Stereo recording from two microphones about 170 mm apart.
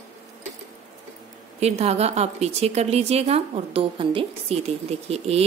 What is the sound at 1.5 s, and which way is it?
Speech, 40° right (ahead or behind).